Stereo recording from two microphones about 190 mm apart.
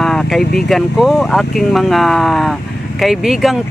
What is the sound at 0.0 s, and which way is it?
Vehicle, centre (ahead or behind).